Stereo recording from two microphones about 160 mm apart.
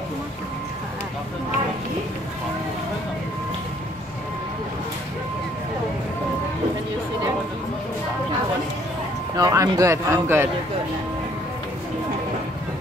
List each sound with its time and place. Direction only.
9.3 s a man's voice: 20° right (ahead or behind)